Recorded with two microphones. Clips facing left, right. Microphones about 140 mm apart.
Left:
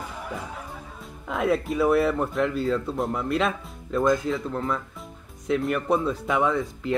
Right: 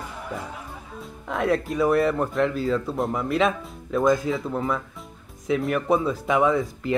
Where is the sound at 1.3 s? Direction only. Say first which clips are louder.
Even; 5° left (ahead or behind).